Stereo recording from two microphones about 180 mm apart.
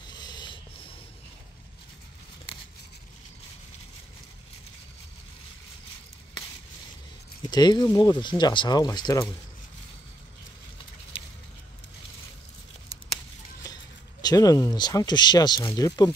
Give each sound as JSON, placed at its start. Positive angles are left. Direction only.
{"t": 0.1, "sound": "a sound", "side_deg": 25}
{"t": 7.4, "sound": "speech", "side_deg": 25}
{"t": 14.2, "sound": "speech", "side_deg": 20}